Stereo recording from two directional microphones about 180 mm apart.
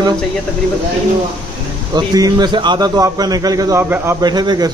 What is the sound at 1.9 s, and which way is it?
A man's voice, 20° right (ahead or behind).